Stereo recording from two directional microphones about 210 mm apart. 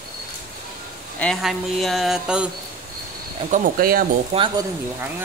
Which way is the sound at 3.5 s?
45° right (ahead or behind).